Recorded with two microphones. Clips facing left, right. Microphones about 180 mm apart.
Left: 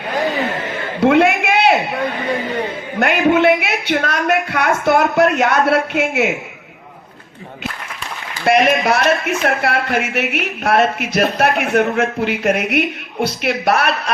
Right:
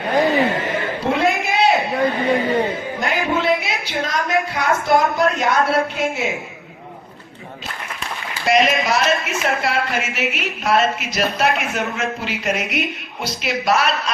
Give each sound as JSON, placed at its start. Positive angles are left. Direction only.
{"t": 1.0, "sound": "a sound", "side_deg": 65}
{"t": 3.0, "sound": "a woman's voice", "side_deg": 65}
{"t": 8.4, "sound": "speech", "side_deg": 60}